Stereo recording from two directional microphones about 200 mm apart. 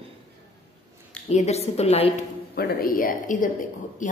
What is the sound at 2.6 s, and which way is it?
A woman's voice, 50° left (ahead or behind).